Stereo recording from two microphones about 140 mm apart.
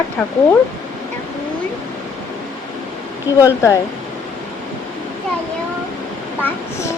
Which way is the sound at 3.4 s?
20° left (ahead or behind).